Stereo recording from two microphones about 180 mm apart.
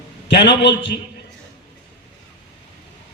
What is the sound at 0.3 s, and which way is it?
Speech, 75° left (ahead or behind).